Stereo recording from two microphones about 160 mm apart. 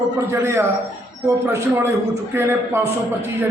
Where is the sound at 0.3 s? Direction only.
15° right (ahead or behind).